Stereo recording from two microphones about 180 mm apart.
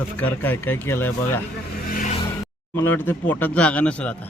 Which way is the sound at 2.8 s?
10° left (ahead or behind).